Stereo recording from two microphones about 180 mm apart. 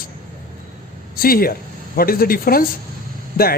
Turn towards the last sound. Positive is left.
turn(degrees=55)  # may be behind; listen again after turning